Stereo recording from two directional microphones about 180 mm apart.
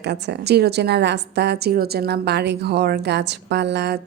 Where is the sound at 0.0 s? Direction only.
70° right (ahead or behind).